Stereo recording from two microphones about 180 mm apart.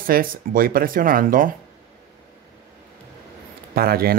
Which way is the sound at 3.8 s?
60° right (ahead or behind).